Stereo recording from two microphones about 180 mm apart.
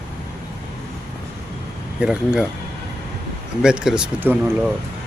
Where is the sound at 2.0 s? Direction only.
5° right (ahead or behind).